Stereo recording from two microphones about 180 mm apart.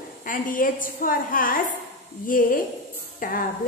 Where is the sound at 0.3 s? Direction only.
50° left (ahead or behind).